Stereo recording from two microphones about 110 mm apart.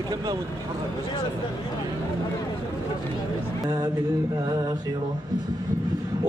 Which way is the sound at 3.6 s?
40° right (ahead or behind).